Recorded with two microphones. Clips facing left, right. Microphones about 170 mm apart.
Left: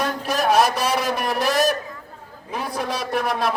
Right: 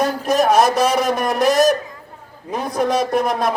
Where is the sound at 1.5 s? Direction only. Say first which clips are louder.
Right 6 dB; 45° right (ahead or behind).